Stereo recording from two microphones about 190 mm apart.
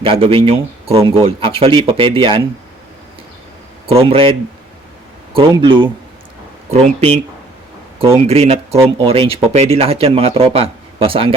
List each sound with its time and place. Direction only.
0.0 s speech: 30° right (ahead or behind)
4.1 s speech: 30° right (ahead or behind)